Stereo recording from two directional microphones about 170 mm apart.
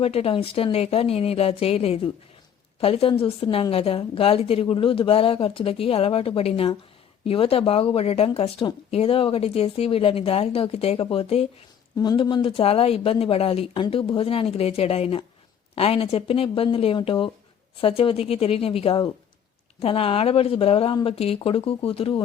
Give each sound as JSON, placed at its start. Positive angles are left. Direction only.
{"t": 0.0, "sound": "speech", "side_deg": 35}